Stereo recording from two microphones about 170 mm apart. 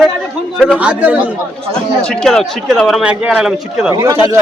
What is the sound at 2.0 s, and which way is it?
A man's voice, 5° left (ahead or behind).